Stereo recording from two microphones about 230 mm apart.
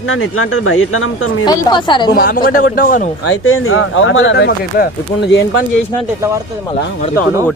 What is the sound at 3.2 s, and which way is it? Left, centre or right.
A man's voice, left.